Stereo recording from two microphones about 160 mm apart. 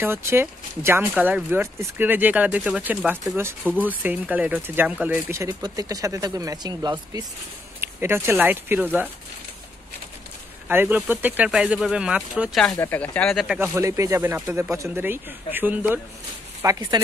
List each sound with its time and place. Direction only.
0.0 s speech: 15° right (ahead or behind)
10.7 s speech: 10° right (ahead or behind)
12.7 s speech: 15° left (ahead or behind)
13.6 s speech: 20° right (ahead or behind)